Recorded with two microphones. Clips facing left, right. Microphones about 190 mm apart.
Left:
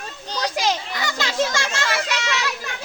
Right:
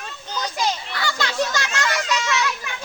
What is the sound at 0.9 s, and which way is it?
Children playing, 20° left (ahead or behind).